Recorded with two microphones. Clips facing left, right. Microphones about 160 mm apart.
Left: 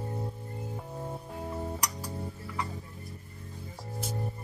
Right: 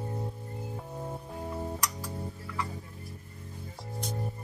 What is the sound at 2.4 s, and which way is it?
Music, 25° left (ahead or behind).